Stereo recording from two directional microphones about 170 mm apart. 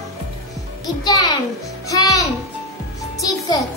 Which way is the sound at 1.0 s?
20° left (ahead or behind).